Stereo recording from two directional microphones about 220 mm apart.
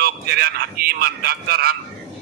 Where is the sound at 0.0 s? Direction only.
45° right (ahead or behind).